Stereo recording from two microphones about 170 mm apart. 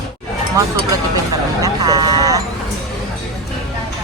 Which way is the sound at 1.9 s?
20° right (ahead or behind).